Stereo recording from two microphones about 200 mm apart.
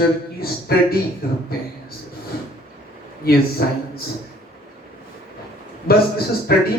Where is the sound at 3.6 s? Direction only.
50° left (ahead or behind).